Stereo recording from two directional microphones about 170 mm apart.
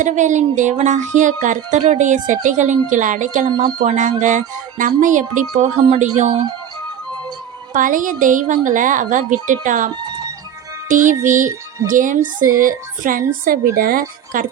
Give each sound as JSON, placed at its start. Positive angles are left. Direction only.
{"t": 0.0, "sound": "speech", "side_deg": -45}
{"t": 7.7, "sound": "a woman's voice", "side_deg": -50}